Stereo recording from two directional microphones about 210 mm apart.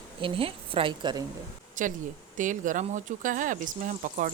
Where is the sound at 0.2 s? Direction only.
25° right (ahead or behind).